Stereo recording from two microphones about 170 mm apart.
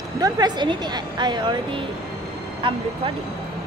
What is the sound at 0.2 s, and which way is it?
A woman's voice, 25° right (ahead or behind).